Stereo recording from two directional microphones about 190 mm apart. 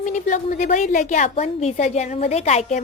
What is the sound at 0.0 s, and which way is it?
A woman's voice, 40° left (ahead or behind).